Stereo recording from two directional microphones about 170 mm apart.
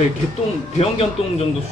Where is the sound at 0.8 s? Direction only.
35° left (ahead or behind).